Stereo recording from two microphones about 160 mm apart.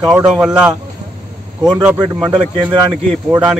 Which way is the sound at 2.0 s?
30° right (ahead or behind).